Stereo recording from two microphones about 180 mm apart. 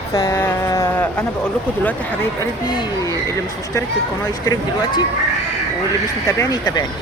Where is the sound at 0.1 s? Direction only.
20° left (ahead or behind).